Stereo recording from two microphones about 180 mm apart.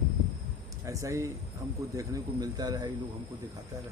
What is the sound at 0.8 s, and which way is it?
Speech, 20° right (ahead or behind).